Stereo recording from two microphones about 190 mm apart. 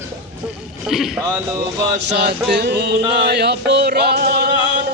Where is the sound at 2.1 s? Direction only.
65° right (ahead or behind).